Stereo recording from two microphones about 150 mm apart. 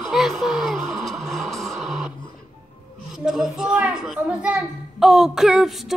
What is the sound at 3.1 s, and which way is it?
A child's voice, 5° right (ahead or behind).